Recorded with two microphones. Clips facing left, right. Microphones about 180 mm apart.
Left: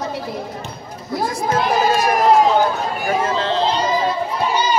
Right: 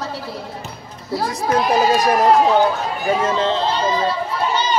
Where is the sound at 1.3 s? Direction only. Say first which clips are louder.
Even; 20° right (ahead or behind).